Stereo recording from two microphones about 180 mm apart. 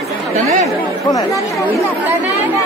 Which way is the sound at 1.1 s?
15° left (ahead or behind).